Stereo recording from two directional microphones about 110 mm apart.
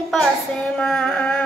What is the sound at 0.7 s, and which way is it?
Female singing, 5° left (ahead or behind).